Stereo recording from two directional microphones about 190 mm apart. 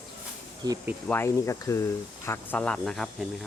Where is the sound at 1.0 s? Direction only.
10° left (ahead or behind).